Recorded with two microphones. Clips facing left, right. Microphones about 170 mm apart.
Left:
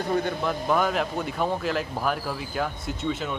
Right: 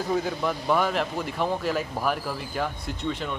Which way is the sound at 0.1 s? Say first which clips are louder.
Left 1 dB; centre (ahead or behind).